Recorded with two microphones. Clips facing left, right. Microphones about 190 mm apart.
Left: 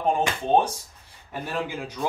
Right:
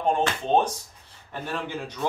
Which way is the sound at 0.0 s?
10° left (ahead or behind).